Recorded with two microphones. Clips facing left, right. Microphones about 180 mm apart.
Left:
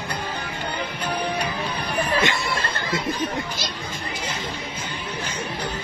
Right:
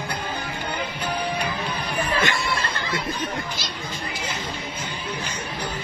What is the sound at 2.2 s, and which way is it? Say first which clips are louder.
Chatter: left 1 dB; 20° left (ahead or behind).